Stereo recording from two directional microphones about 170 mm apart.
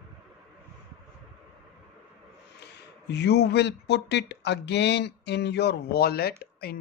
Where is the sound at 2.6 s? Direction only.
85° left.